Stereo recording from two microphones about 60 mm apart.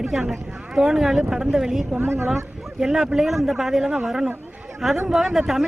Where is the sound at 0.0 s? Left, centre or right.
Centre.